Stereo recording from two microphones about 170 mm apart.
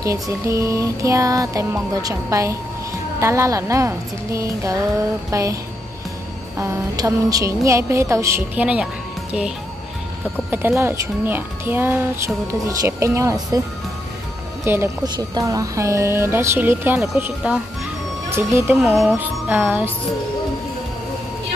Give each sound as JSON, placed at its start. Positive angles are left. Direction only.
{"t": 0.0, "sound": "music", "side_deg": -20}
{"t": 3.2, "sound": "speech", "side_deg": -15}
{"t": 6.6, "sound": "speech", "side_deg": -20}
{"t": 10.5, "sound": "speech", "side_deg": -15}
{"t": 14.6, "sound": "speech", "side_deg": -15}